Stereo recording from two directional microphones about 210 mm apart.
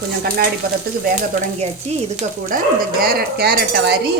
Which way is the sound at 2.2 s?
40° right (ahead or behind).